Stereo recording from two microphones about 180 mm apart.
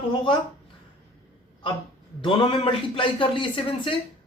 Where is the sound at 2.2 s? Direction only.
30° left (ahead or behind).